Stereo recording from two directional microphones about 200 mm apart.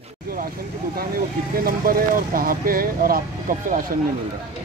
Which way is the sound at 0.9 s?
45° right (ahead or behind).